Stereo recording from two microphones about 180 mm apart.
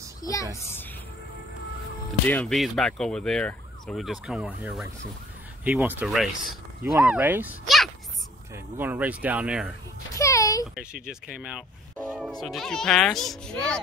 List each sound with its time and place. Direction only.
0.2 s a woman's voice: 20° left (ahead or behind)
2.2 s emergency vehicle: 5° left (ahead or behind)
5.6 s speech: 10° right (ahead or behind)
10.1 s a sound: 20° left (ahead or behind)
11.1 s emergency vehicle: 5° right (ahead or behind)